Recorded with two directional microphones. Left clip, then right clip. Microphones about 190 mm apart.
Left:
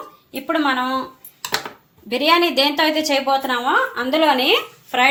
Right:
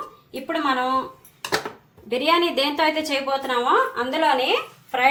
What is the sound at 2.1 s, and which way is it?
A woman's voice, 40° left (ahead or behind).